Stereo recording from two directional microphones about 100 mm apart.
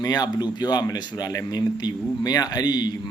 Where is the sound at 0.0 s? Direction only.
40° left (ahead or behind).